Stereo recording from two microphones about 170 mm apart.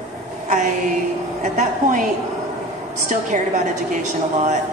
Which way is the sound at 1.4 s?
45° right (ahead or behind).